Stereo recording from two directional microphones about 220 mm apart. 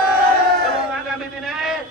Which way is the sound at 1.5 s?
Centre (ahead or behind).